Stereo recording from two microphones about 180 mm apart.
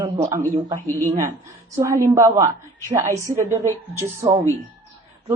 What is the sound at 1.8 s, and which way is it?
Speech, 15° right (ahead or behind).